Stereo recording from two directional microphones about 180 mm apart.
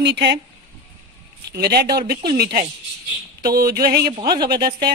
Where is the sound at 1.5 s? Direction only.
65° right (ahead or behind).